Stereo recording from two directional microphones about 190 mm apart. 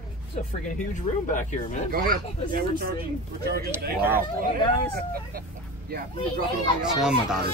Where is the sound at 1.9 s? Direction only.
50° right (ahead or behind).